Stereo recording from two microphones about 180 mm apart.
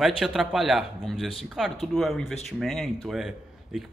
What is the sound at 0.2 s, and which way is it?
Speech, centre (ahead or behind).